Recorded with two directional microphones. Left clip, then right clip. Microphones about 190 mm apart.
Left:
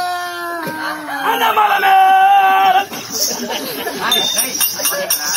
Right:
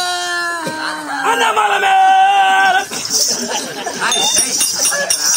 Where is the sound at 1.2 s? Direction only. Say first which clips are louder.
Even; 20° right (ahead or behind).